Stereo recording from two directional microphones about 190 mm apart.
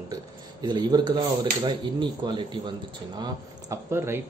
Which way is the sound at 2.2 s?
25° right (ahead or behind).